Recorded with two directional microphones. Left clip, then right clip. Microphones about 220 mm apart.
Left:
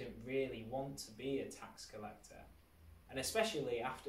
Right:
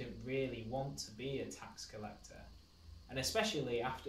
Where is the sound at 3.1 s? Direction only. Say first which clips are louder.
Right 1 dB; 15° right (ahead or behind).